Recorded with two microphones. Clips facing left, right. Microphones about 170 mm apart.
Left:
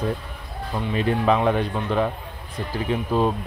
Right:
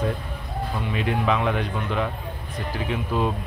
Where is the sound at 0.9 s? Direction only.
35° left (ahead or behind).